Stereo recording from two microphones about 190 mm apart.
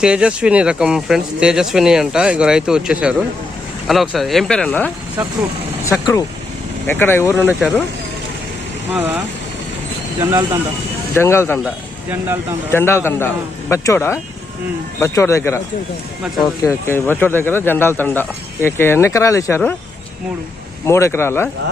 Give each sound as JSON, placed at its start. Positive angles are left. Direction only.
{"t": 0.0, "sound": "speech", "side_deg": -5}
{"t": 5.8, "sound": "speech", "side_deg": 15}
{"t": 8.9, "sound": "speech", "side_deg": -10}
{"t": 11.1, "sound": "speech", "side_deg": 15}
{"t": 12.7, "sound": "speech", "side_deg": 10}
{"t": 20.8, "sound": "speech", "side_deg": 15}